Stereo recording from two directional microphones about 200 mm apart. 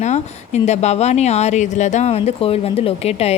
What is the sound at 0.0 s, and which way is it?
A woman's voice, 35° left (ahead or behind).